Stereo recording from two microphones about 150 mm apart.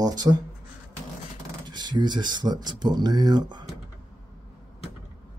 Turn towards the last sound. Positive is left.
turn(degrees=-30)  # may be behind; listen again after turning